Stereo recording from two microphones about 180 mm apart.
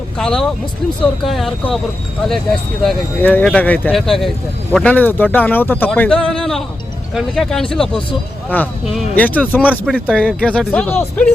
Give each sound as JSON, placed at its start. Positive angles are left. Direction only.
{"t": 0.2, "sound": "speech", "side_deg": 5}